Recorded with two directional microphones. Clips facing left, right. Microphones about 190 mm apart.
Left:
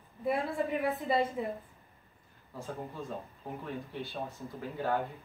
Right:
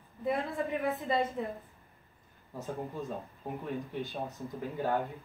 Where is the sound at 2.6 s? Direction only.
20° right (ahead or behind).